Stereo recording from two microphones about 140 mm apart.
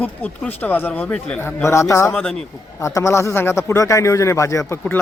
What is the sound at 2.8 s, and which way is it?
Speech, 20° left (ahead or behind).